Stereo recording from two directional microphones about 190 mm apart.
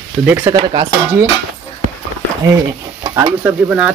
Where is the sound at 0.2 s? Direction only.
10° right (ahead or behind).